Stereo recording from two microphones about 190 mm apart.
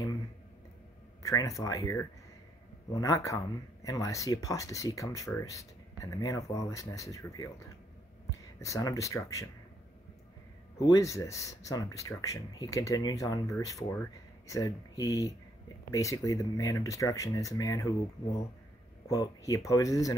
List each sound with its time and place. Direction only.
1.2 s speech: 15° left (ahead or behind)
8.5 s speech: 15° left (ahead or behind)
10.8 s speech: 20° left (ahead or behind)